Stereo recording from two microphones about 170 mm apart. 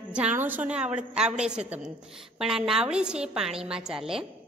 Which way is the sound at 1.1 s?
5° right (ahead or behind).